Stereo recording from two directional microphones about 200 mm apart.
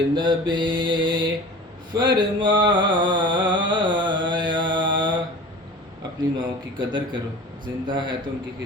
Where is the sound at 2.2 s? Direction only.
20° right (ahead or behind).